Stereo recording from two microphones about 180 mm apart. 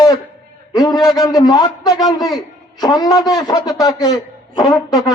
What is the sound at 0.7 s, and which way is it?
A man's voice, 20° left (ahead or behind).